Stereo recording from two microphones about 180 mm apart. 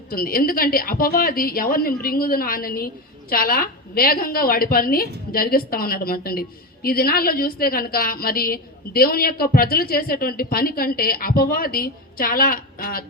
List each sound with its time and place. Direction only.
0.1 s a woman's voice: 55° left (ahead or behind)